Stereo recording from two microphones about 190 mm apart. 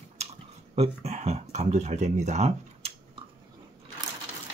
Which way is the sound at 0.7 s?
35° right (ahead or behind).